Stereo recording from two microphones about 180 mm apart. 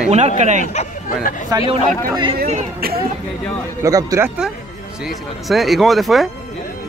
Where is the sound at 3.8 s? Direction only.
20° right (ahead or behind).